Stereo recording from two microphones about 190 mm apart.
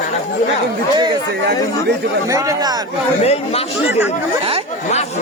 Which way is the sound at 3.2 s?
35° left (ahead or behind).